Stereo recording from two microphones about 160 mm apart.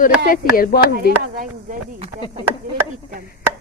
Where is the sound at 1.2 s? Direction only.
60° right (ahead or behind).